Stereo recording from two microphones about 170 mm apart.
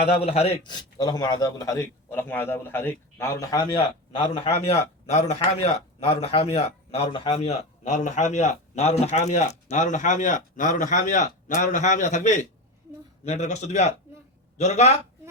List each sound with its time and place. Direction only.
0.0 s a man's voice: 35° left (ahead or behind)